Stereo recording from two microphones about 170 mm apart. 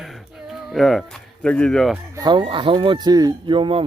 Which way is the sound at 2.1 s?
25° right (ahead or behind).